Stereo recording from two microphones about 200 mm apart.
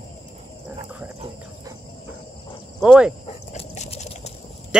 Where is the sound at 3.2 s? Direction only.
35° left (ahead or behind).